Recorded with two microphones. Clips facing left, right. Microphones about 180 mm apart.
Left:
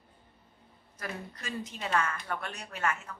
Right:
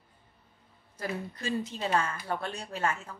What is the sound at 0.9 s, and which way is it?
A woman's voice, 30° right (ahead or behind).